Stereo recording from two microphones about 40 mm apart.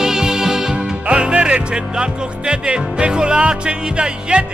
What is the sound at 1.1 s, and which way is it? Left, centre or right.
Music, right.